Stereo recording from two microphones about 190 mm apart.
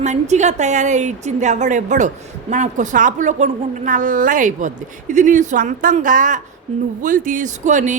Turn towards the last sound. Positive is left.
turn(degrees=-40)  # may be behind; listen again after turning